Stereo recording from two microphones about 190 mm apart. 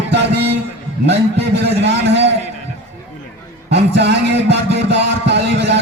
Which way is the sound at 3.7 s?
65° right (ahead or behind).